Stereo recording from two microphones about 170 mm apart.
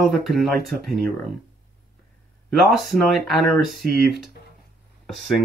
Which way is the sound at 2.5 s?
Centre (ahead or behind).